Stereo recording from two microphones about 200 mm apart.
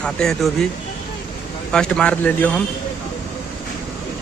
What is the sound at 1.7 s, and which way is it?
Speech, 5° left (ahead or behind).